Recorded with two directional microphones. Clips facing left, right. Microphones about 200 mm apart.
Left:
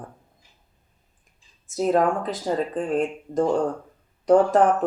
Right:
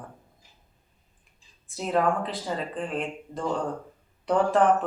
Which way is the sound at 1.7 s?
45° left (ahead or behind).